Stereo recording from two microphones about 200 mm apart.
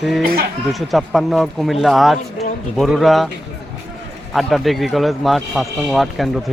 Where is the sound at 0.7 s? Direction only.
Centre (ahead or behind).